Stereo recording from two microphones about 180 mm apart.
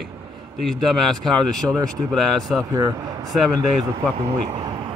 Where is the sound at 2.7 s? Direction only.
20° right (ahead or behind).